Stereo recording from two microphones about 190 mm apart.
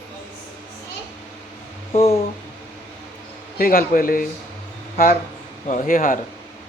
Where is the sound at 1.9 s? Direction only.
30° left (ahead or behind).